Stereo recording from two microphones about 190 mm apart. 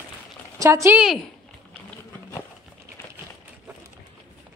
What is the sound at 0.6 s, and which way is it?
Speech, 15° right (ahead or behind).